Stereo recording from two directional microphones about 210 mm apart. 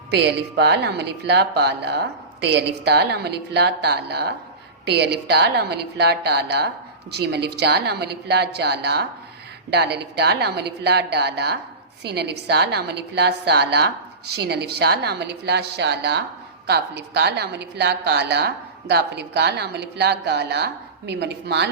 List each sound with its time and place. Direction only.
0.1 s a woman's voice: 55° right (ahead or behind)